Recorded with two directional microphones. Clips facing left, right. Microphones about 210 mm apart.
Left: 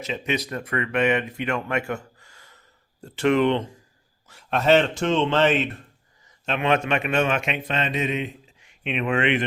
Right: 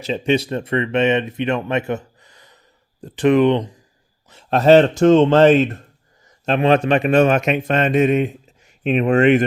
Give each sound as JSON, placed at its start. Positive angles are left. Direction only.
{"t": 0.0, "sound": "speech", "side_deg": -30}
{"t": 4.4, "sound": "a man's voice", "side_deg": -40}